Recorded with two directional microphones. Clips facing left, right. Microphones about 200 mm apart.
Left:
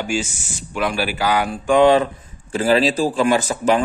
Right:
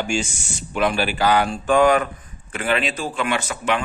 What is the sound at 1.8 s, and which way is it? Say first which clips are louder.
A man's voice: left 4 dB; 25° left (ahead or behind).